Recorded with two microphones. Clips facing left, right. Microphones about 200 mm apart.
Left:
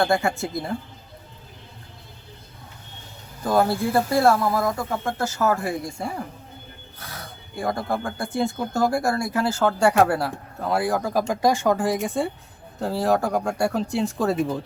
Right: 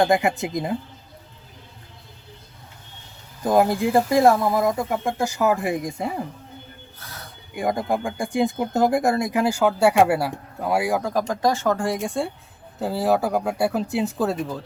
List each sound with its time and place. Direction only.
0.0 s speech: 15° right (ahead or behind)
3.4 s speech: 15° right (ahead or behind)
7.5 s speech: 15° right (ahead or behind)
11.0 s speech: 10° left (ahead or behind)
11.8 s speech: centre (ahead or behind)
14.3 s speech: 15° left (ahead or behind)